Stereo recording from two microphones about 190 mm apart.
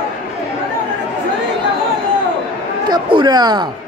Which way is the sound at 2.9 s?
25° right (ahead or behind).